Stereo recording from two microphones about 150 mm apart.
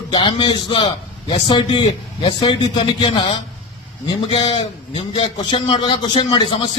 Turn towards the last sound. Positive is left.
turn(degrees=35)  # may be behind; listen again after turning